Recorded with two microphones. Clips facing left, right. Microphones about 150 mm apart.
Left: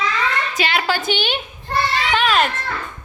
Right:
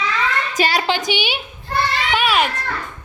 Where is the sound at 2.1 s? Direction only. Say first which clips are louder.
Left 1 dB; 10° right (ahead or behind).